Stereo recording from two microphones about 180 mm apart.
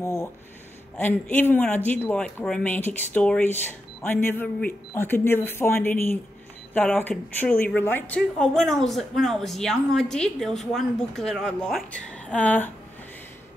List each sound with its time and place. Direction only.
0.0 s a woman's voice: 15° left (ahead or behind)